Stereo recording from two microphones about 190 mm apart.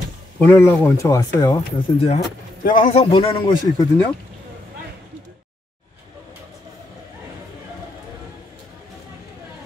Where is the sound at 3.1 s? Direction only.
25° left (ahead or behind).